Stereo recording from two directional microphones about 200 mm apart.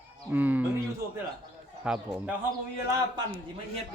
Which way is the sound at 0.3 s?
10° right (ahead or behind).